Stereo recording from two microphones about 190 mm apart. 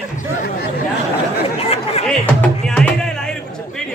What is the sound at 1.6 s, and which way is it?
Chatter, 30° left (ahead or behind).